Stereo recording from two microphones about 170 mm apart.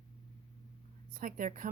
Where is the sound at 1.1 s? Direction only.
55° right (ahead or behind).